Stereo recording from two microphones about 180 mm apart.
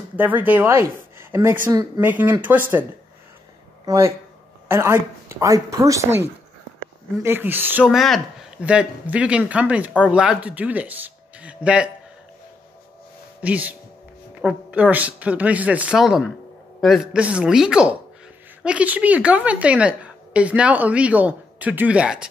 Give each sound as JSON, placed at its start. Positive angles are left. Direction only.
{"t": 0.1, "sound": "a woman's voice", "side_deg": -10}
{"t": 3.8, "sound": "a woman's voice", "side_deg": -20}
{"t": 7.2, "sound": "a woman's voice", "side_deg": -10}
{"t": 13.4, "sound": "a woman's voice", "side_deg": -10}